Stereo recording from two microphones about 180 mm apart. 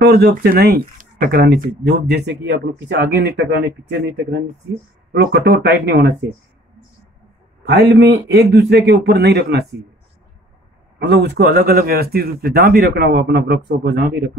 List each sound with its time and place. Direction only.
0.0 s speech: 60° right (ahead or behind)
7.6 s speech: 65° right (ahead or behind)
11.0 s speech: 65° right (ahead or behind)